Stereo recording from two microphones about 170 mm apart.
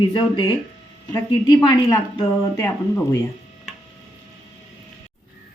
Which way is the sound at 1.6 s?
25° left (ahead or behind).